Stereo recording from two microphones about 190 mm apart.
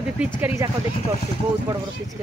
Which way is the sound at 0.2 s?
10° right (ahead or behind).